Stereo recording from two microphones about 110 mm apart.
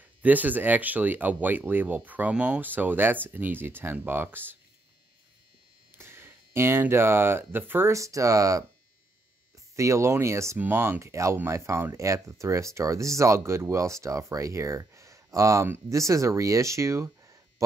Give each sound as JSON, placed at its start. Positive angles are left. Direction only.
{"t": 0.0, "sound": "speech", "side_deg": -15}
{"t": 5.9, "sound": "speech", "side_deg": -20}
{"t": 9.8, "sound": "speech", "side_deg": -25}